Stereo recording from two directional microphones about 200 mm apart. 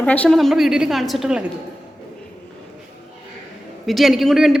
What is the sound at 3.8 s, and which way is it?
Speech, centre (ahead or behind).